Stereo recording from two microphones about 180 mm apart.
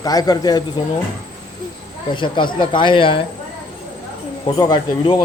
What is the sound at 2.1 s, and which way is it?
Speech, 25° left (ahead or behind).